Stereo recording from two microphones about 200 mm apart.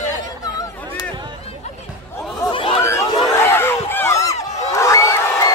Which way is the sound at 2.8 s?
15° left (ahead or behind).